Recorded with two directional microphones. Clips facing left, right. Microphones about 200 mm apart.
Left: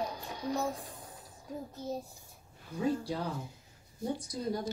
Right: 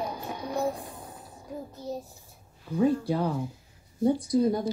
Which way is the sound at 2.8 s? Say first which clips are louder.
Right 8 dB; 60° right (ahead or behind).